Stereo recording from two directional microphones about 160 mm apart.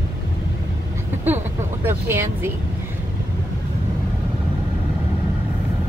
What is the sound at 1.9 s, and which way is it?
Speech, 15° right (ahead or behind).